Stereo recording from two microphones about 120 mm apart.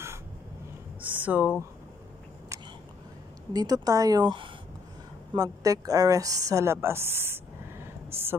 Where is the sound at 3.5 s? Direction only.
30° right (ahead or behind).